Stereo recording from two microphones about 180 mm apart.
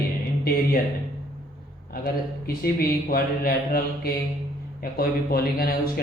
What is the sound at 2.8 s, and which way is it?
Speech, 55° left (ahead or behind).